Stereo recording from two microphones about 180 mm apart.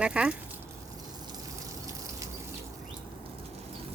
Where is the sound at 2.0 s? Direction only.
20° right (ahead or behind).